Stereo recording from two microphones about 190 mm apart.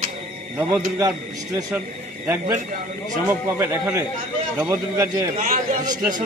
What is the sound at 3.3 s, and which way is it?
Speech, 10° right (ahead or behind).